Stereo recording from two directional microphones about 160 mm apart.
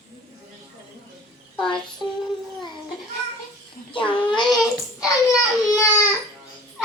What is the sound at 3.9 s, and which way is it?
Child singing, 30° left (ahead or behind).